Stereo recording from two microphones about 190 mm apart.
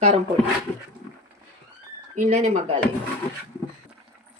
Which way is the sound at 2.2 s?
35° right (ahead or behind).